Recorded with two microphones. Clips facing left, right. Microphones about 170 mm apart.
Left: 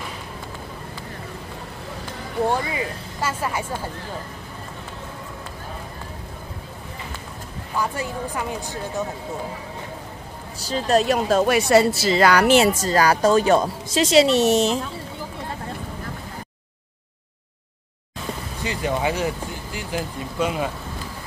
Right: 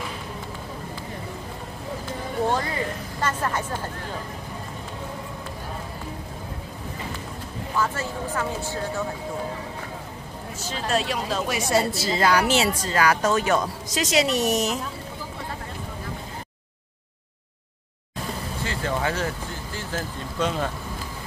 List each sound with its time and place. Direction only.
2.5 s speech: 10° left (ahead or behind)
7.7 s speech: 15° left (ahead or behind)
10.6 s a woman's voice: 35° left (ahead or behind); by 12.6 s 65° left (ahead or behind)
12.8 s a woman's voice: 35° left (ahead or behind)
18.6 s speech: 15° left (ahead or behind)